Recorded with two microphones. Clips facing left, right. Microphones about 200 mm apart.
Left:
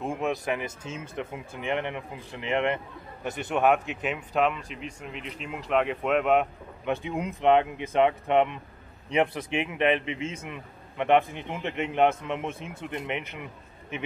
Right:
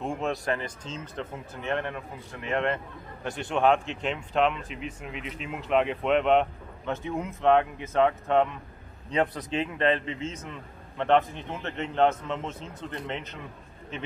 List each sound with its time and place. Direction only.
0.2 s a man's voice: 15° left (ahead or behind)
6.9 s a man's voice: 15° left (ahead or behind)